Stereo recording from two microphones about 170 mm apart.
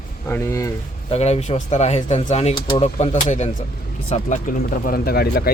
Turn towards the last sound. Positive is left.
turn(degrees=65)  # may be behind; listen again after turning